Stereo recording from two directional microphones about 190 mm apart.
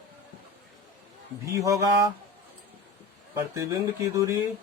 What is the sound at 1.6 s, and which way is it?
Speech, 15° right (ahead or behind).